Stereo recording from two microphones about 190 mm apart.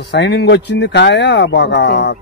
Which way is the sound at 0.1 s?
65° left (ahead or behind).